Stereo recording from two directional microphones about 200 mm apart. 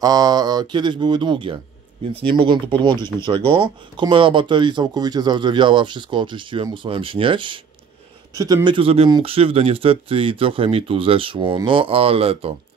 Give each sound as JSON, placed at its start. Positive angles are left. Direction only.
{"t": 0.0, "sound": "speech", "side_deg": -20}